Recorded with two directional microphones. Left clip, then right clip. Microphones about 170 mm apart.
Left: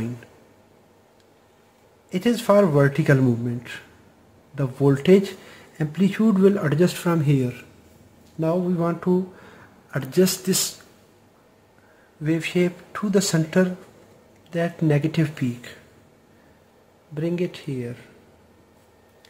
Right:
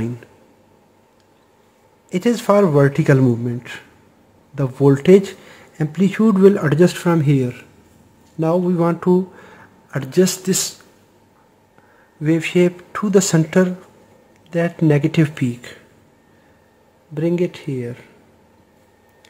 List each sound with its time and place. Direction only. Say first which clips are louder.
2.0 s speech: right 3 dB; 20° right (ahead or behind)
9.4 s a sound: right 4 dB; 20° right (ahead or behind)
12.2 s speech: right 6 dB; 30° right (ahead or behind)
17.1 s speech: right 6 dB; 25° right (ahead or behind)